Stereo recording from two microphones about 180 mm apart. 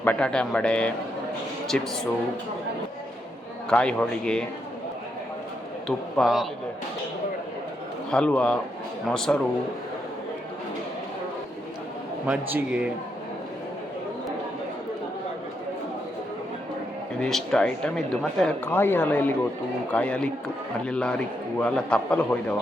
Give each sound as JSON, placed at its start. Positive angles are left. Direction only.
{"t": 0.0, "sound": "a man's voice", "side_deg": 5}
{"t": 3.7, "sound": "speech", "side_deg": 5}
{"t": 6.1, "sound": "speech", "side_deg": 0}
{"t": 8.1, "sound": "a man's voice", "side_deg": 5}
{"t": 12.2, "sound": "a man's voice", "side_deg": -10}
{"t": 17.2, "sound": "a man's voice", "side_deg": 5}